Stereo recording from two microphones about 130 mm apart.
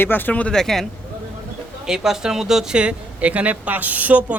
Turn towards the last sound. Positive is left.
turn(degrees=-10)  # may be behind; listen again after turning